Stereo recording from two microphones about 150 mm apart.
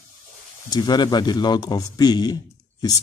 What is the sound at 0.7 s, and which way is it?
A man's voice, 30° left (ahead or behind).